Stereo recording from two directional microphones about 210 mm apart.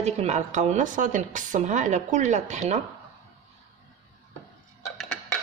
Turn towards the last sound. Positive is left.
turn(degrees=0)  # may be behind; listen again after turning